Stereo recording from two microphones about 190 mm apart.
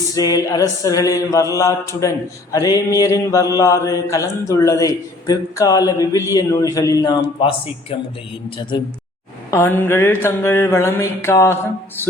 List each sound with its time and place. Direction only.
0.1 s speech: 20° left (ahead or behind)
9.5 s speech: 10° left (ahead or behind)